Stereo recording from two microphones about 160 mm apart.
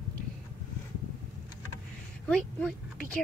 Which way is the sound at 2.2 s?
5° left (ahead or behind).